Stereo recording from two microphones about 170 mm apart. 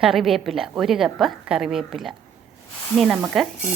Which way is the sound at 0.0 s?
Centre (ahead or behind).